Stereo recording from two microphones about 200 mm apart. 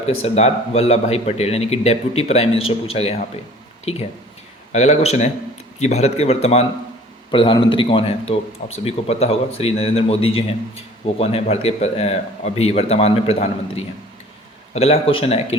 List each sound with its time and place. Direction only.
0.2 s a man's voice: 30° left (ahead or behind)